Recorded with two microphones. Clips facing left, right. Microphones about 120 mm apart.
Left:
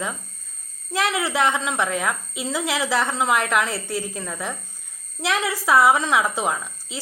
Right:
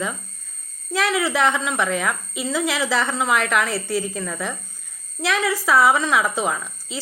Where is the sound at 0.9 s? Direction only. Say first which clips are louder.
Right 2 dB; 20° left (ahead or behind).